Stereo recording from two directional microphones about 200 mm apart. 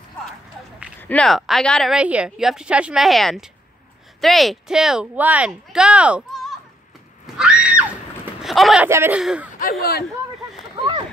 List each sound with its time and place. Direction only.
1.0 s a woman's voice: 5° left (ahead or behind)
7.2 s screaming: 5° right (ahead or behind)
8.3 s speech: centre (ahead or behind)
8.8 s a woman's voice: 10° right (ahead or behind)
9.6 s speech: 45° left (ahead or behind)
10.8 s a sound: 25° right (ahead or behind)